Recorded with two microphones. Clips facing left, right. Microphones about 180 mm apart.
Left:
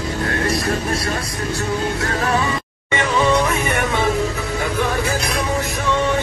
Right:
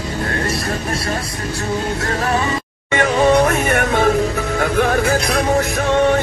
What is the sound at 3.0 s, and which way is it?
Music, 50° right (ahead or behind).